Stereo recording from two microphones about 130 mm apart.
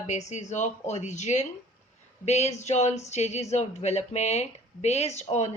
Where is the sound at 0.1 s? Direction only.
60° left (ahead or behind).